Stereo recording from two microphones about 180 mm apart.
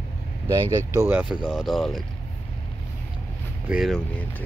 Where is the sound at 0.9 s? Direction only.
15° right (ahead or behind).